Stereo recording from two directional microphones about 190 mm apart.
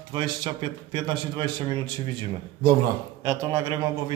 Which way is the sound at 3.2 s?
15° right (ahead or behind).